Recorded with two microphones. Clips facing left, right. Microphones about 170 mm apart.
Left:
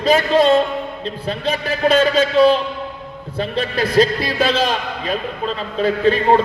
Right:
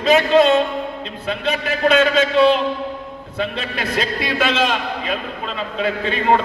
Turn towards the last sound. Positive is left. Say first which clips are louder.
# left 6 dB
turn(degrees=35)  # may be behind; listen again after turning